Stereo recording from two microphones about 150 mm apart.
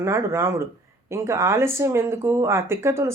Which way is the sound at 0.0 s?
15° right (ahead or behind).